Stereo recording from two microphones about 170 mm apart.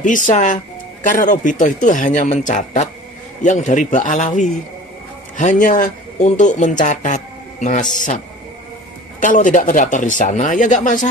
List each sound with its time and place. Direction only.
0.0 s speech: 50° left (ahead or behind)
9.2 s speech: 50° left (ahead or behind)